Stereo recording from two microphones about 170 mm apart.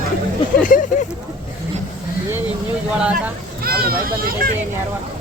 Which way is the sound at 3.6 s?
60° right (ahead or behind).